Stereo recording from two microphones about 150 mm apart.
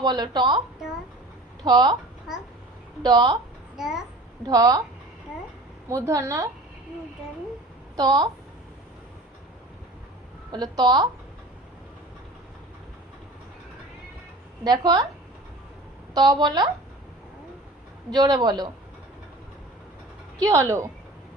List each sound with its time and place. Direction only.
0.0 s speech: 30° right (ahead or behind)
1.6 s speech: 30° right (ahead or behind)
3.0 s speech: 30° right (ahead or behind)
3.8 s a child's voice: 5° right (ahead or behind)
4.4 s speech: 25° right (ahead or behind)
5.9 s speech: 20° right (ahead or behind)
7.9 s speech: 30° right (ahead or behind)
10.5 s speech: 30° right (ahead or behind)
14.6 s speech: 30° right (ahead or behind)
16.1 s speech: 25° right (ahead or behind)
18.1 s speech: 30° right (ahead or behind)
20.4 s speech: 20° right (ahead or behind)